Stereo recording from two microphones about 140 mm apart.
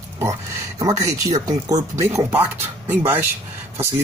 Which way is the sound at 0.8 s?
25° right (ahead or behind).